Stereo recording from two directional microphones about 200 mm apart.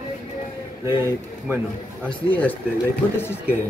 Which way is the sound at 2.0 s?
10° left (ahead or behind).